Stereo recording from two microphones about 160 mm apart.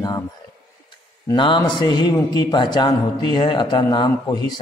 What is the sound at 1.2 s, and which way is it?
A man's voice, 30° left (ahead or behind).